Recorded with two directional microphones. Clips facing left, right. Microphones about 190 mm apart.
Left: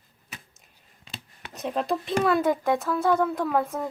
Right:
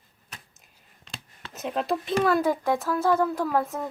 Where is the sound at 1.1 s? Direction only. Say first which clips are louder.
Left 1 dB; centre (ahead or behind).